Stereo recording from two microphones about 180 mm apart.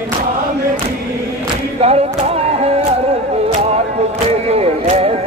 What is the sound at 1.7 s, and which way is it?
Singing, 35° right (ahead or behind).